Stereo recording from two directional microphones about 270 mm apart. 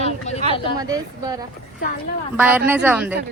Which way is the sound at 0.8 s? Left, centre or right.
Centre.